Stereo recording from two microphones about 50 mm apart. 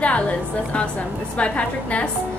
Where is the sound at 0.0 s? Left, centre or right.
Left.